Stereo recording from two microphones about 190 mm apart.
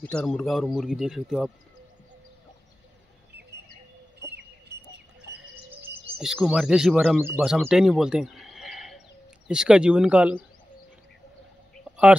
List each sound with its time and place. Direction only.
0.0 s speech: 5° left (ahead or behind)
4.3 s chicken: 60° right (ahead or behind)
5.8 s speech: 5° right (ahead or behind)